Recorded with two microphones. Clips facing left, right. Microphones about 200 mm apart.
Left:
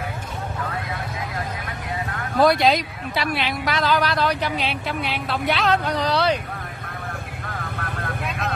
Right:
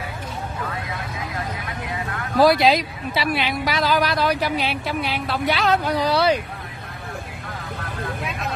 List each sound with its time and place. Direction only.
2.4 s a woman's voice: centre (ahead or behind)
7.7 s vehicle: 60° left (ahead or behind)